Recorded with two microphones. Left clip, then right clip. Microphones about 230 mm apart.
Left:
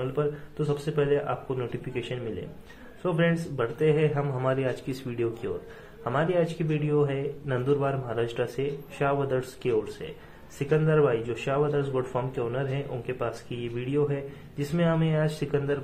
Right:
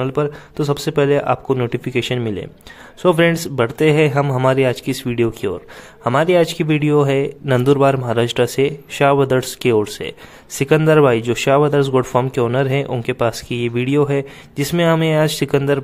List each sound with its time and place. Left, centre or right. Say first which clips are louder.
0.0 s speech: right 9 dB; right